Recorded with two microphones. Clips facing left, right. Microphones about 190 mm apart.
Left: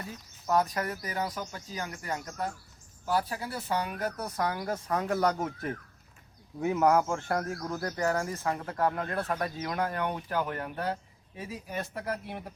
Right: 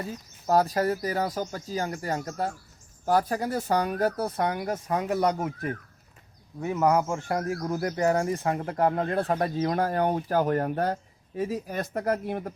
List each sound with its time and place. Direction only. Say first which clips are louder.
0.4 s speech: right 5 dB; 35° right (ahead or behind)
4.9 s speech: right 2 dB; 10° right (ahead or behind); by 12.5 s 50° right (ahead or behind)